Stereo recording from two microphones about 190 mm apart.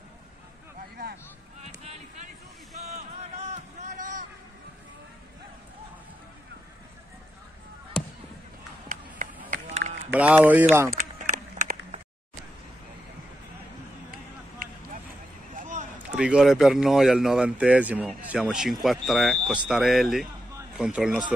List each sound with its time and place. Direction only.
1.6 s a sound: 35° right (ahead or behind)
8.8 s run: 45° right (ahead or behind)
10.1 s speech: 10° right (ahead or behind)
10.9 s run: 40° right (ahead or behind)
16.2 s speech: 5° right (ahead or behind)